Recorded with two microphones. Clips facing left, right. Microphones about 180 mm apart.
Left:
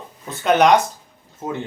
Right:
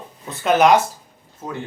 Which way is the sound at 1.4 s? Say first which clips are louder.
Left 4 dB; 20° left (ahead or behind).